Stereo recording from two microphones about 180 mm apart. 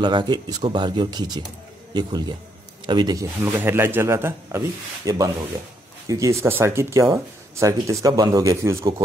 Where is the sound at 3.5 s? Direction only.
10° right (ahead or behind).